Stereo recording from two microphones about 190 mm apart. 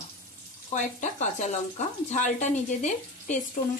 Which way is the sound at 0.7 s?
40° left (ahead or behind).